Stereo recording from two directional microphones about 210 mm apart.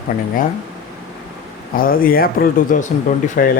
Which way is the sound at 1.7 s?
45° left (ahead or behind).